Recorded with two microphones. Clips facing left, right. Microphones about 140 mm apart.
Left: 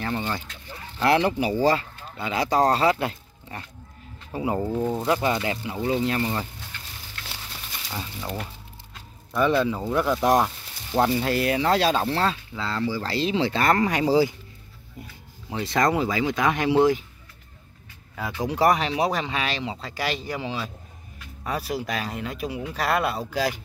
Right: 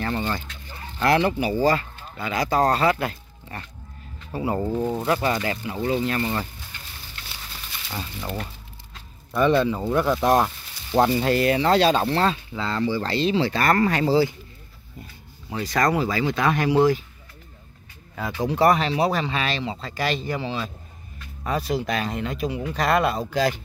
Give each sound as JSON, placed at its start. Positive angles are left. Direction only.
{"t": 0.0, "sound": "a sound", "side_deg": 10}
{"t": 1.0, "sound": "speech", "side_deg": 15}
{"t": 4.6, "sound": "speech", "side_deg": -5}
{"t": 5.0, "sound": "speech", "side_deg": 15}
{"t": 7.9, "sound": "speech", "side_deg": 0}
{"t": 9.8, "sound": "speech", "side_deg": -10}
{"t": 10.2, "sound": "speech", "side_deg": 10}
{"t": 15.5, "sound": "speech", "side_deg": 20}
{"t": 18.1, "sound": "speech", "side_deg": 10}